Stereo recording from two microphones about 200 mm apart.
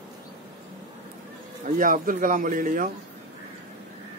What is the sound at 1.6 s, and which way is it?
Speech, 40° right (ahead or behind).